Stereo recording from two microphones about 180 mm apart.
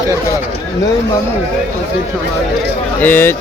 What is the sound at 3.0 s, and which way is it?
Speech, 10° left (ahead or behind).